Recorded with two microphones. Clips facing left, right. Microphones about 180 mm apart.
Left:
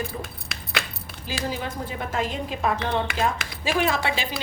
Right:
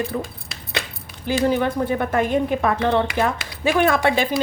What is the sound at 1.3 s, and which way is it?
Speech, 60° right (ahead or behind).